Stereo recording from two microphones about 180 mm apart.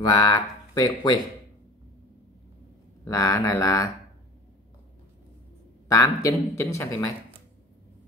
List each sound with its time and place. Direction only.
0.0 s speech: 20° left (ahead or behind)
3.1 s speech: 20° left (ahead or behind)
5.9 s a man's voice: 20° left (ahead or behind)